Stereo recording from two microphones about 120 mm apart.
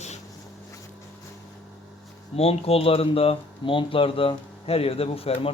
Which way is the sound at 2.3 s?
55° left (ahead or behind).